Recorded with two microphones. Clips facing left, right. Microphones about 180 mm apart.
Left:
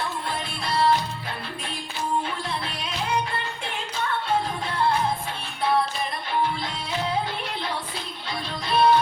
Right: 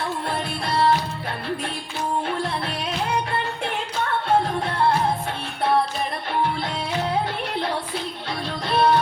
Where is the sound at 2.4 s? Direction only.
55° right (ahead or behind).